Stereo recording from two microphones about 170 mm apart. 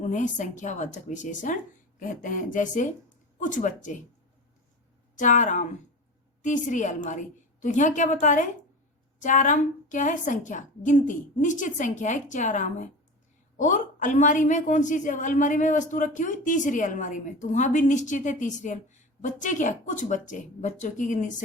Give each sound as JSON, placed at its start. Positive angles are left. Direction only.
{"t": 0.1, "sound": "a woman's voice", "side_deg": 45}
{"t": 5.1, "sound": "a woman's voice", "side_deg": 50}